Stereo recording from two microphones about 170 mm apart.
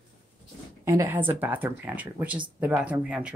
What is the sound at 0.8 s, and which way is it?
Speech, 15° right (ahead or behind).